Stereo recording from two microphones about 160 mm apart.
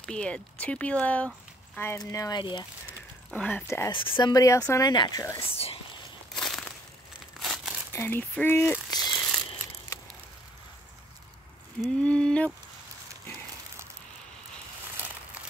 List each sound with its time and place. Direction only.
0.0 s speech: 5° left (ahead or behind); by 2.6 s 30° left (ahead or behind)
3.3 s speech: 5° left (ahead or behind)
3.9 s speech: 30° left (ahead or behind)
5.5 s speech: 40° left (ahead or behind)
6.3 s crushing: 5° left (ahead or behind)
7.3 s crumpling: centre (ahead or behind)
7.9 s speech: 15° left (ahead or behind)
9.0 s crumpling: centre (ahead or behind)
12.0 s speech: 5° left (ahead or behind)